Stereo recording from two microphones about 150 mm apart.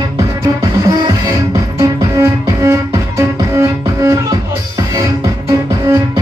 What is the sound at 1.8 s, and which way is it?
Music, 20° right (ahead or behind).